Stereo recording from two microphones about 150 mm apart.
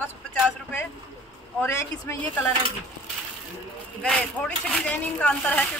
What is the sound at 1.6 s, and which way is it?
Speech, 20° left (ahead or behind).